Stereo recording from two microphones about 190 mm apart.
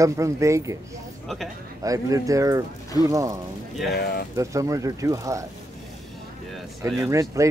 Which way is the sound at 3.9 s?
55° left (ahead or behind).